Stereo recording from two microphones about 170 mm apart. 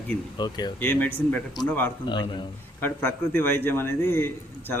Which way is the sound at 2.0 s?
30° left (ahead or behind).